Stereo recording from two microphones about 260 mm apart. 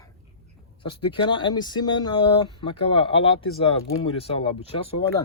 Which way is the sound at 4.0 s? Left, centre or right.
Left.